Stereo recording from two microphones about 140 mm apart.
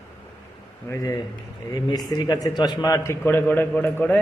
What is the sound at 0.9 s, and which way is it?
A man's voice, 25° left (ahead or behind).